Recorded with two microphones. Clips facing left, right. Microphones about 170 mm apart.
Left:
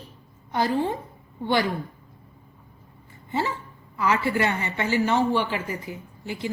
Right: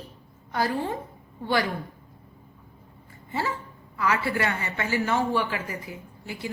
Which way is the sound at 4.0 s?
20° left (ahead or behind).